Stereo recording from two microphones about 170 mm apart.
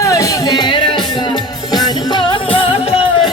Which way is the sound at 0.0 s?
20° left (ahead or behind).